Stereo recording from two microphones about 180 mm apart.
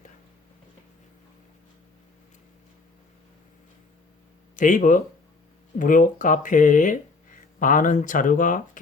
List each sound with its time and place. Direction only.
4.5 s speech: 45° left (ahead or behind)